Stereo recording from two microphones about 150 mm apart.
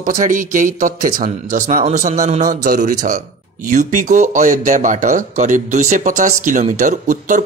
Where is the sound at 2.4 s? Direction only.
70° right (ahead or behind).